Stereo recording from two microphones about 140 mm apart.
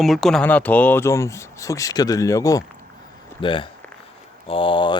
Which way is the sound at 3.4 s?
35° left (ahead or behind).